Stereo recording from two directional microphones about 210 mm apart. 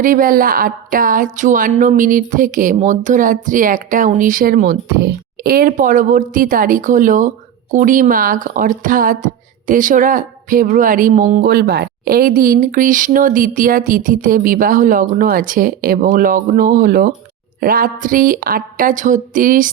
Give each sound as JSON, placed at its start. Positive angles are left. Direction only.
{"t": 0.0, "sound": "a woman's voice", "side_deg": -40}